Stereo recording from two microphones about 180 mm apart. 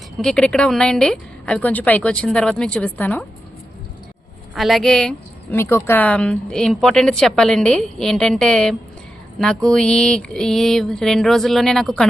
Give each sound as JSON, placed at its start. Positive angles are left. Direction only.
{"t": 0.2, "sound": "speech", "side_deg": 5}
{"t": 4.5, "sound": "speech", "side_deg": 0}